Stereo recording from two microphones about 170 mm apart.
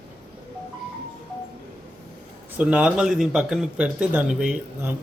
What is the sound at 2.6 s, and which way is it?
A man's voice, 5° right (ahead or behind).